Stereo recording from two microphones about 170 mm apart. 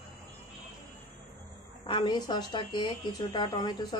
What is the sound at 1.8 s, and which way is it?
A woman's voice, 30° left (ahead or behind).